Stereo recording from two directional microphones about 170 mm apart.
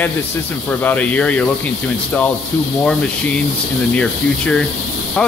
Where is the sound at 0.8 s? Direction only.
10° left (ahead or behind).